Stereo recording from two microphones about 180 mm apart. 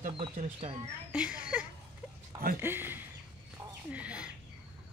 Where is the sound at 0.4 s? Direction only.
35° right (ahead or behind).